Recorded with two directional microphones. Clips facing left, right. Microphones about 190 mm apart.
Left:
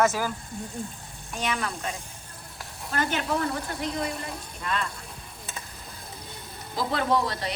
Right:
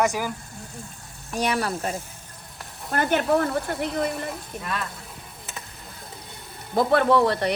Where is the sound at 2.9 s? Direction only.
55° right (ahead or behind).